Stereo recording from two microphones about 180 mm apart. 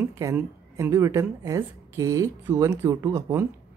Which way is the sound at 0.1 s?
15° right (ahead or behind).